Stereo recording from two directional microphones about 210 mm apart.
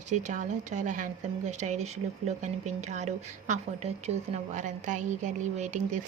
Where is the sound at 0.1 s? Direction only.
35° right (ahead or behind).